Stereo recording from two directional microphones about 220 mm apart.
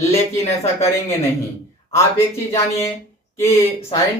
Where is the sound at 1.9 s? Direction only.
10° left (ahead or behind).